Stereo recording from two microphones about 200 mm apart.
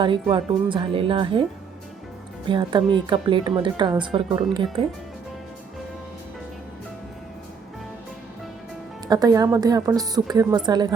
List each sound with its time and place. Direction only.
0.0 s speech: 25° right (ahead or behind)
2.5 s speech: 25° right (ahead or behind)
9.0 s speech: 20° right (ahead or behind)